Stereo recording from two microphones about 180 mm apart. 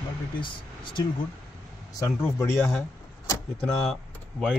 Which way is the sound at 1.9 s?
15° left (ahead or behind).